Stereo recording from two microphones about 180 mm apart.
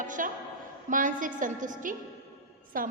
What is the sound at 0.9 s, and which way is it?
A woman's voice, 50° right (ahead or behind).